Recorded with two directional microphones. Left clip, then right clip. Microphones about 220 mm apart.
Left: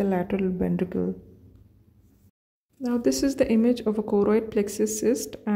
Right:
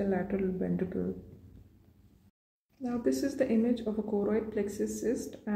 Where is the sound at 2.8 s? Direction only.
35° left (ahead or behind).